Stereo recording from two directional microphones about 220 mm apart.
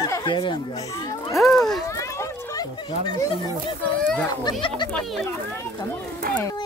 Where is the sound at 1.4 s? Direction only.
Centre (ahead or behind).